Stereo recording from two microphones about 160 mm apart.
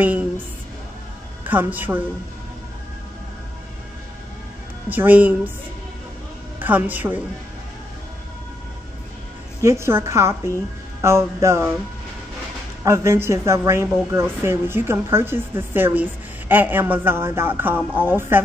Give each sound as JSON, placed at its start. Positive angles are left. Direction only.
{"t": 0.0, "sound": "speech", "side_deg": -10}
{"t": 1.4, "sound": "speech", "side_deg": -10}
{"t": 4.8, "sound": "speech", "side_deg": -10}
{"t": 6.6, "sound": "speech", "side_deg": -10}
{"t": 9.6, "sound": "speech", "side_deg": -15}
{"t": 12.8, "sound": "speech", "side_deg": -20}